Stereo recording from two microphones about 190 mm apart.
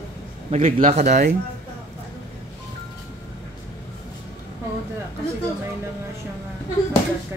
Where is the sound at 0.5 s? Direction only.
35° right (ahead or behind).